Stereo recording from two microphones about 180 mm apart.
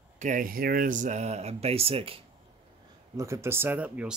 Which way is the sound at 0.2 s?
45° right (ahead or behind).